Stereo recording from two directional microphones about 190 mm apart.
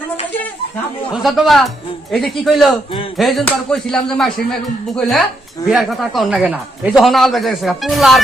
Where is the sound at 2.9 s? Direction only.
30° left (ahead or behind).